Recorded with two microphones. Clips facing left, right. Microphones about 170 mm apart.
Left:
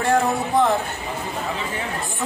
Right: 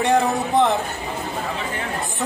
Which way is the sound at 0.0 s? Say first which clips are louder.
Right 1 dB; centre (ahead or behind).